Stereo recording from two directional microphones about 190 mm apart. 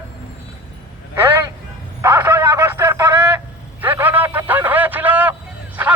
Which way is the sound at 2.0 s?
10° right (ahead or behind).